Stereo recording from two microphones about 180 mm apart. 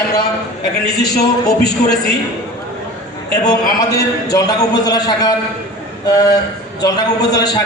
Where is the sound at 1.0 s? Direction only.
20° left (ahead or behind).